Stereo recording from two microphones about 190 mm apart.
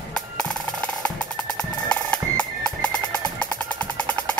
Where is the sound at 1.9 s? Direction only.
5° left (ahead or behind).